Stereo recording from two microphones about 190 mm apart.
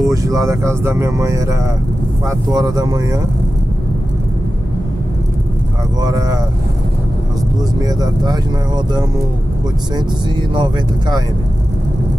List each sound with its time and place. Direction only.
0.0 s speech: 20° right (ahead or behind)
6.0 s speech: 20° right (ahead or behind)
7.8 s speech: 20° right (ahead or behind)